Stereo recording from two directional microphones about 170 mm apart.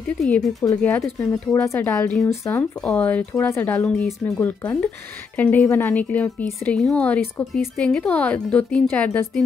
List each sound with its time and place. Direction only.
0.2 s speech: centre (ahead or behind)
0.7 s a woman's voice: 10° left (ahead or behind)